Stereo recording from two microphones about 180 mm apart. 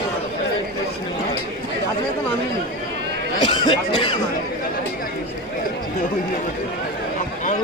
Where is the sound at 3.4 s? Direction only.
25° left (ahead or behind).